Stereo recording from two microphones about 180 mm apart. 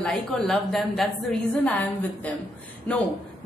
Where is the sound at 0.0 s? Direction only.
Centre (ahead or behind).